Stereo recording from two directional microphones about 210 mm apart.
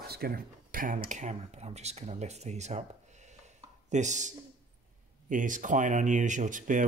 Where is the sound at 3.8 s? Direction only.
35° right (ahead or behind).